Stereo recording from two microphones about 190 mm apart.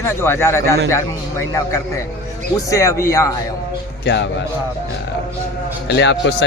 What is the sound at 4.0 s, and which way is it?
Speech, 65° left (ahead or behind).